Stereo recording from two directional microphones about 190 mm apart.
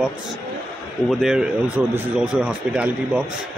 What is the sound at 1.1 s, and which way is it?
A man's voice, centre (ahead or behind).